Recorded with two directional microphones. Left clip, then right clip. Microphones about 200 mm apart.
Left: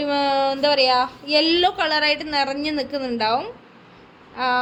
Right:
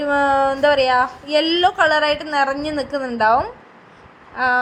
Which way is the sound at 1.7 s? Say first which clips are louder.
Right 4 dB; 10° right (ahead or behind).